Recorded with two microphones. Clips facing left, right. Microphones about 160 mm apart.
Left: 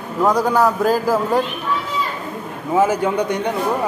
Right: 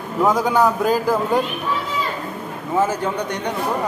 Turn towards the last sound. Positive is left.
turn(degrees=10)  # may be behind; listen again after turning